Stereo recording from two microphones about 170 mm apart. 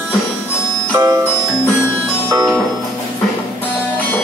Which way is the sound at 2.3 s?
20° right (ahead or behind).